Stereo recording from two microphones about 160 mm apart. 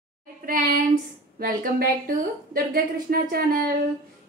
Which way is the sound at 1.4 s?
60° right (ahead or behind).